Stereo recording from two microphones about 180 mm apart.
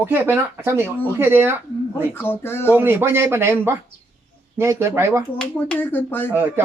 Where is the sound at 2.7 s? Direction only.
10° right (ahead or behind).